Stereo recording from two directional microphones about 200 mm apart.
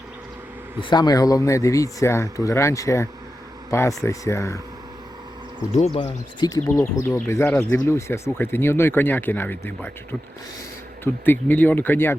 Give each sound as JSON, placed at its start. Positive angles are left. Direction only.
{"t": 0.8, "sound": "speech", "side_deg": 20}
{"t": 5.7, "sound": "speech", "side_deg": 30}